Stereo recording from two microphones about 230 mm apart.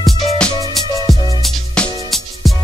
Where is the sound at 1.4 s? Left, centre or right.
Centre.